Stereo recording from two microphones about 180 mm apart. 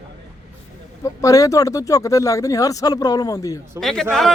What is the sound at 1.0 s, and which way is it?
Speech, 20° left (ahead or behind).